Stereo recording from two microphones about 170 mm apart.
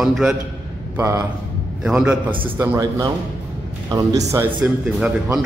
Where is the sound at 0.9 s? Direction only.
15° right (ahead or behind).